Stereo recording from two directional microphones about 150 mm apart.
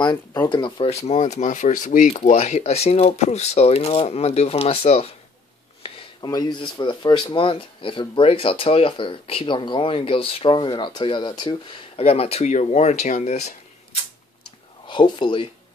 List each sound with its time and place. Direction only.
0.0 s speech: 30° left (ahead or behind)
1.0 s speech: 45° left (ahead or behind)
6.2 s speech: 30° left (ahead or behind); by 13.6 s 50° left (ahead or behind)
14.9 s speech: 30° left (ahead or behind)